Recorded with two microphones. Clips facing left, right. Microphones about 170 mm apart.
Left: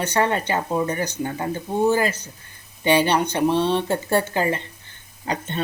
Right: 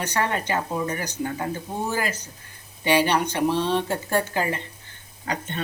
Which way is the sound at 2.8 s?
25° left (ahead or behind).